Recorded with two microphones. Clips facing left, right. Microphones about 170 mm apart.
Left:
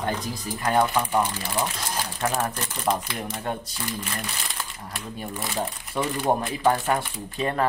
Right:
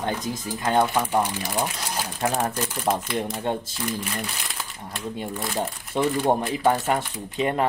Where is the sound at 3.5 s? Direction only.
25° right (ahead or behind).